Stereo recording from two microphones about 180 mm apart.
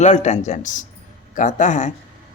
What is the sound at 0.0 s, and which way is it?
Speech, 40° left (ahead or behind).